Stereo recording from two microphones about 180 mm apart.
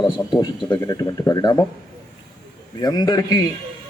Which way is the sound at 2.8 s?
25° left (ahead or behind).